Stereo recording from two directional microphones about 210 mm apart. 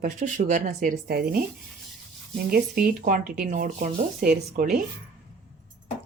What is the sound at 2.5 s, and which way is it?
Speech, 45° right (ahead or behind).